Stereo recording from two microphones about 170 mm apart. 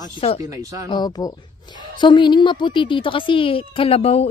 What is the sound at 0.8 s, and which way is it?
A woman's voice, 25° left (ahead or behind).